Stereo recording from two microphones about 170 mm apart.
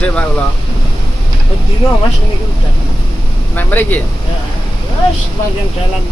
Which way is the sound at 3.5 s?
10° left (ahead or behind).